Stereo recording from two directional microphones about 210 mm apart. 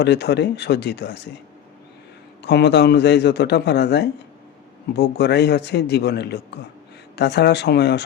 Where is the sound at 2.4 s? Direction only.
55° left (ahead or behind).